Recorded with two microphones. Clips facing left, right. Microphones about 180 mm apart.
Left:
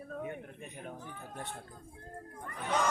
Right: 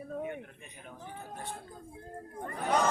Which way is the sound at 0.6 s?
45° left (ahead or behind).